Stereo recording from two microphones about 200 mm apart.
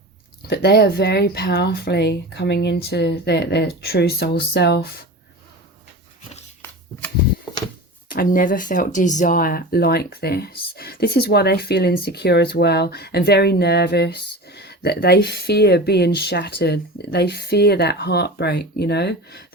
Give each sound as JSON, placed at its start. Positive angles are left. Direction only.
{"t": 0.4, "sound": "speech", "side_deg": 55}
{"t": 8.1, "sound": "speech", "side_deg": 45}